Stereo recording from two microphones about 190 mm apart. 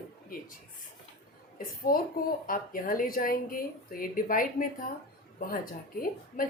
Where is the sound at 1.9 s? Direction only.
45° left (ahead or behind).